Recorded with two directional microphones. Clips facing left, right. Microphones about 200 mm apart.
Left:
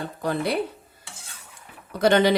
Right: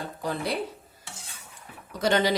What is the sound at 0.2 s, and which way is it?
Speech, 60° left (ahead or behind).